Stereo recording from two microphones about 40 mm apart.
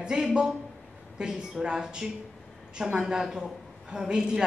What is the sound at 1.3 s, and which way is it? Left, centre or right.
A woman's voice, centre.